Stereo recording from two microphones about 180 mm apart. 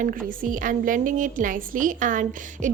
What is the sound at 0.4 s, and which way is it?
A woman's voice, 50° right (ahead or behind).